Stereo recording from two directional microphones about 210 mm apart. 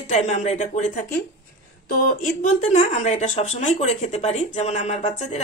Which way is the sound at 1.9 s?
40° left (ahead or behind).